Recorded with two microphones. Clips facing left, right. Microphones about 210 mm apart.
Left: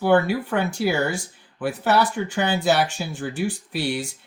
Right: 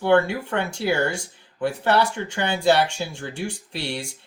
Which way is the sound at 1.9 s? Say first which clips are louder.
Left 1 dB; 25° right (ahead or behind).